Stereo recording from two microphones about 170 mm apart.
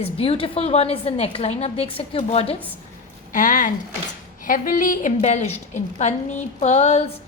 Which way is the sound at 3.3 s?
50° left (ahead or behind).